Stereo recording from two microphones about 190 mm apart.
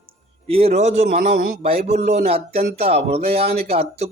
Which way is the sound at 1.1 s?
50° right (ahead or behind).